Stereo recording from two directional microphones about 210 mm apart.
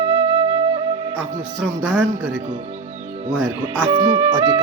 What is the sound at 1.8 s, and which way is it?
Speech, 5° right (ahead or behind).